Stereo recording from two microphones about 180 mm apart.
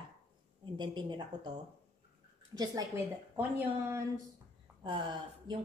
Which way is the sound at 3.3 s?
10° right (ahead or behind).